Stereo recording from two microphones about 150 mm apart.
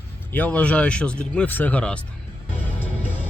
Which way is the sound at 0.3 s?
10° left (ahead or behind).